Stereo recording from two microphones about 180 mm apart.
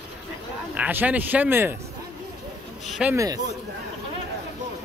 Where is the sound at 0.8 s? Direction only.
10° right (ahead or behind).